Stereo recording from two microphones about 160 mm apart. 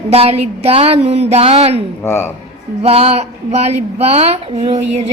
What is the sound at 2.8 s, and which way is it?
A woman's voice, 40° right (ahead or behind).